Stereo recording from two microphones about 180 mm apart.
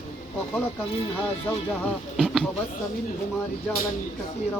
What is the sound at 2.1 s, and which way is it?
Speech, 5° left (ahead or behind).